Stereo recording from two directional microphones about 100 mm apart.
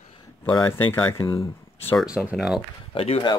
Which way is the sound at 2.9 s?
70° left (ahead or behind).